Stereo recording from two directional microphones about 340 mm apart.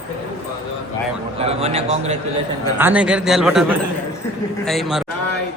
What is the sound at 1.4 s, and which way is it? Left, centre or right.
Speech, centre.